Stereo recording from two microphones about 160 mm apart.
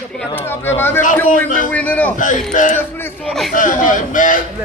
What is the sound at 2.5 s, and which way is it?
A man's voice, 55° left (ahead or behind).